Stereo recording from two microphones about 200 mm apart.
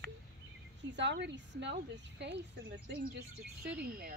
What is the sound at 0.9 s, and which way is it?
A woman's voice, 60° right (ahead or behind).